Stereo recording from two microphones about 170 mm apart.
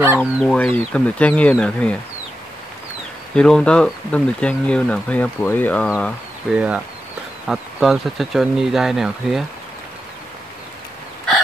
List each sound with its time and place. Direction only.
0.2 s speech: 5° left (ahead or behind)
3.3 s speech: 5° left (ahead or behind)
6.5 s speech: 5° right (ahead or behind)